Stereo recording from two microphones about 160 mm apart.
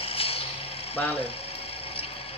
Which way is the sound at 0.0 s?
35° left (ahead or behind).